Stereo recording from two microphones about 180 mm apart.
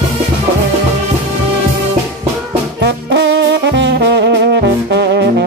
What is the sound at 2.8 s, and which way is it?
Music, 80° right.